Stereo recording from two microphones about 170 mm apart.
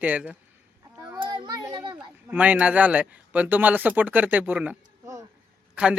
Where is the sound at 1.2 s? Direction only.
25° right (ahead or behind).